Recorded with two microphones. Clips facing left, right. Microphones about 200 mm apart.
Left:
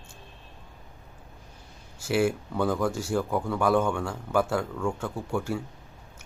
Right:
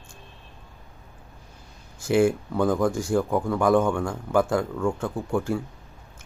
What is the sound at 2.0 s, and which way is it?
Speech, 10° left (ahead or behind).